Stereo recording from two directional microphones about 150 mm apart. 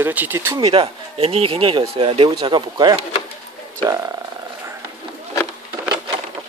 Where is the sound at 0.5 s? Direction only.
40° right (ahead or behind); by 4.2 s 20° right (ahead or behind).